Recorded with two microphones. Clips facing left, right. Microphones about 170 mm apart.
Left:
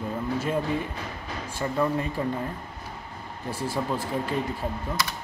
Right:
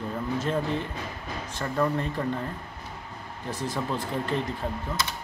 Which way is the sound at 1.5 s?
10° left (ahead or behind).